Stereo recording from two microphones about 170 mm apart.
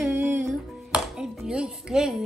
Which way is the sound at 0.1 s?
10° right (ahead or behind).